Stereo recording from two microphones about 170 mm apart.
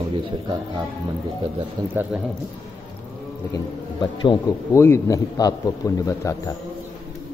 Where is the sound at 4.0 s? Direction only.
25° left (ahead or behind).